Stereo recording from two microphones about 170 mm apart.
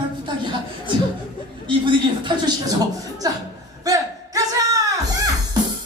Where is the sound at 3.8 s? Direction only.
20° right (ahead or behind).